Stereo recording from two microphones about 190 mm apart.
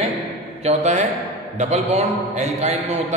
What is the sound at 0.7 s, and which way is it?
A man's voice, 35° right (ahead or behind).